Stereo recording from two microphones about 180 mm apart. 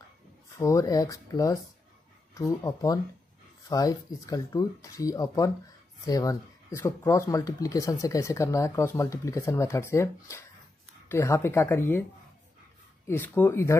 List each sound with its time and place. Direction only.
0.6 s speech: 15° left (ahead or behind)
13.0 s speech: 10° left (ahead or behind)